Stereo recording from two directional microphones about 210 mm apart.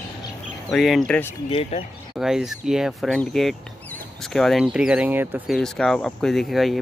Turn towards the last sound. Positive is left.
turn(degrees=0)  # may be behind; listen again after turning